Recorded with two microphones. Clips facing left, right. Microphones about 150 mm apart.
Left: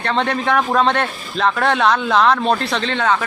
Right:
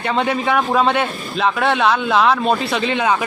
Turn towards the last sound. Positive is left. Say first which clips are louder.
# right 1 dB
turn(degrees=-10)  # may be behind; listen again after turning